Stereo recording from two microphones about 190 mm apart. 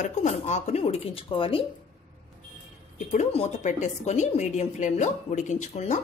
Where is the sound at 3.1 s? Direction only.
35° left (ahead or behind).